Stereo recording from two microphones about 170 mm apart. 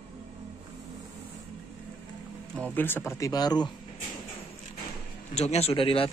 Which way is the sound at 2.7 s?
10° left (ahead or behind).